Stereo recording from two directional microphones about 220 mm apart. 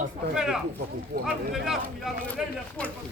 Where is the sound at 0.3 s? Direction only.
5° right (ahead or behind).